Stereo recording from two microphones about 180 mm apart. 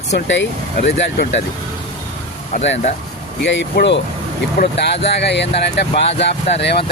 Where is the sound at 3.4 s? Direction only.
75° left (ahead or behind).